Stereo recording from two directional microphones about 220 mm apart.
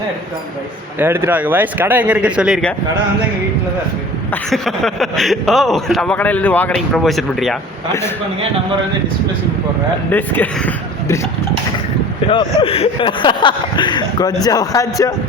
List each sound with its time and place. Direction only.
0.9 s speech: 10° right (ahead or behind)
4.4 s speech: centre (ahead or behind)
10.1 s speech: 10° left (ahead or behind)
12.3 s speech: 20° left (ahead or behind)